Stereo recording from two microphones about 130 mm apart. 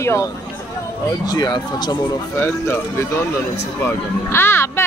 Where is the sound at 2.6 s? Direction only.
20° left (ahead or behind).